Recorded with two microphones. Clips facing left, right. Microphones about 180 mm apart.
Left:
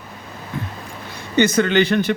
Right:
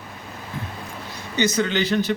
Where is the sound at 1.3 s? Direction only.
55° left (ahead or behind).